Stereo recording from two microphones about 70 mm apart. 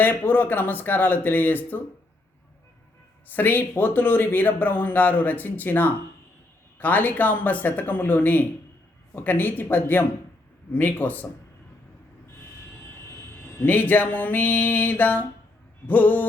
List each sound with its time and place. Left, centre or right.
0.0 s speech: left
3.3 s speech: left
12.9 s a sound: left
15.9 s speech: left